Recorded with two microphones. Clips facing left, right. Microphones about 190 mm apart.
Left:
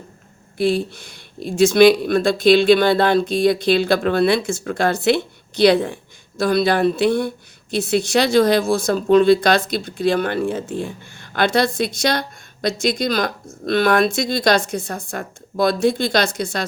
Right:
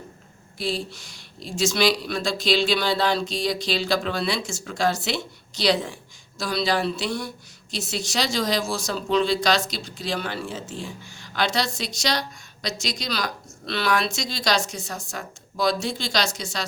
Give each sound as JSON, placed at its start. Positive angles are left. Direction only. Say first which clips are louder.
{"t": 0.6, "sound": "speech", "louder": "left 10 dB", "side_deg": 60}